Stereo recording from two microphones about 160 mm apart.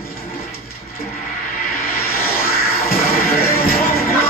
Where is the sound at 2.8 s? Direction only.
70° left (ahead or behind).